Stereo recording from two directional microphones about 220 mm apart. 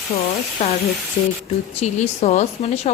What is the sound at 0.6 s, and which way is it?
Speech, 30° left (ahead or behind).